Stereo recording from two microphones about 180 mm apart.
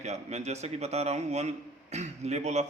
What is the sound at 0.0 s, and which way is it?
A man's voice, 40° right (ahead or behind).